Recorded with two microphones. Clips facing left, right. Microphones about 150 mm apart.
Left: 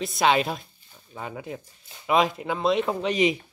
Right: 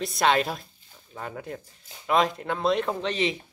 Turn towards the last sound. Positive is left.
turn(degrees=15)  # may be behind; listen again after turning